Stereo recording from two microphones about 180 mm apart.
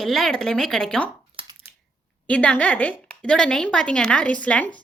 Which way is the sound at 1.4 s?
30° right (ahead or behind).